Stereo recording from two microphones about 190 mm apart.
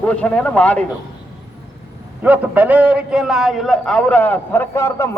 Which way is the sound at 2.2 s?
10° right (ahead or behind).